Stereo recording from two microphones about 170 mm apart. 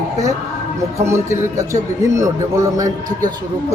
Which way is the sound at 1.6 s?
15° right (ahead or behind).